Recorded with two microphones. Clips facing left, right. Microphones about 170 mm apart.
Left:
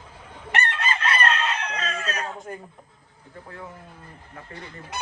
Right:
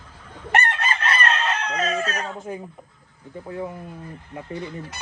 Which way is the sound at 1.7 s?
45° right (ahead or behind).